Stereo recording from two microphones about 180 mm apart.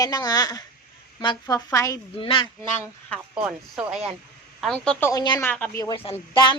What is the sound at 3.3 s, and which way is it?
Speech, 5° right (ahead or behind).